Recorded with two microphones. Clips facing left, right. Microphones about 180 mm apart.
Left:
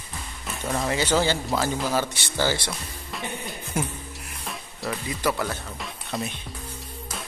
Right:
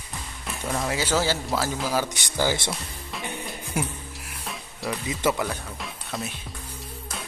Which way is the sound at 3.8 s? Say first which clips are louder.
Even; 10° right (ahead or behind).